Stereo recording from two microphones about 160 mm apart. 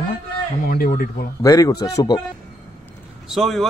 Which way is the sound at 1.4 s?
20° left (ahead or behind).